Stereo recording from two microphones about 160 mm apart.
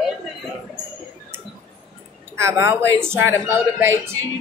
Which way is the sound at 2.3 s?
15° right (ahead or behind).